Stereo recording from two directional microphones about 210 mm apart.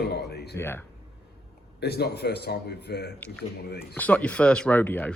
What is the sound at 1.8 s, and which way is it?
A man's voice, 50° left (ahead or behind).